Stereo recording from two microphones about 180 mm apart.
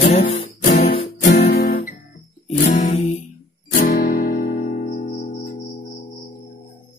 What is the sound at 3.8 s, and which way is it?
Music, 55° left (ahead or behind).